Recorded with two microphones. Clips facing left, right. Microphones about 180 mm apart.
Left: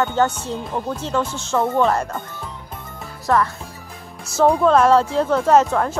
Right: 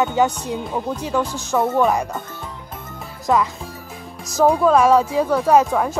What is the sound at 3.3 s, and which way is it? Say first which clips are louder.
Speech: even; 15° right (ahead or behind).